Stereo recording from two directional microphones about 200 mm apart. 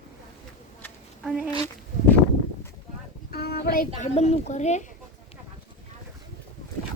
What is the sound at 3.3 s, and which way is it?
Child singing, 50° left (ahead or behind).